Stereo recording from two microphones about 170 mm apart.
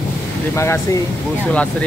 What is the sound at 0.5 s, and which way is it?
Speech, 15° left (ahead or behind).